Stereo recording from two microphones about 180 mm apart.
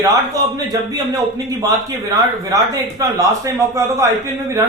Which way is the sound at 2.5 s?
20° right (ahead or behind).